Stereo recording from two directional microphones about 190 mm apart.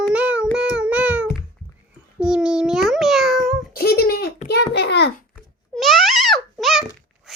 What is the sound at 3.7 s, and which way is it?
A child's voice, 55° left (ahead or behind).